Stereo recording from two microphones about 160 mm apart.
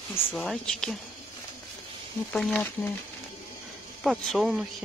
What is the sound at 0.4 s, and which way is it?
Speech, 5° left (ahead or behind).